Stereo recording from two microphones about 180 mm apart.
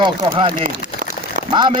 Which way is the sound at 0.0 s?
30° right (ahead or behind).